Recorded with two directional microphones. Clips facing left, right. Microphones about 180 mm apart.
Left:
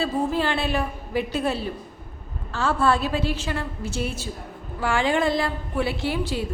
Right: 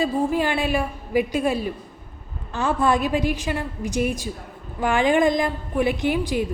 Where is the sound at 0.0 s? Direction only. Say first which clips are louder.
Right 2 dB; 15° right (ahead or behind).